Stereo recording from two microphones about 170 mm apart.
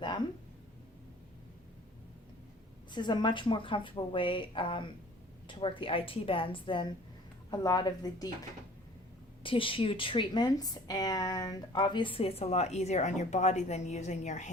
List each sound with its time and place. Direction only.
2.9 s a woman's voice: 25° left (ahead or behind)
9.4 s a woman's voice: 30° left (ahead or behind)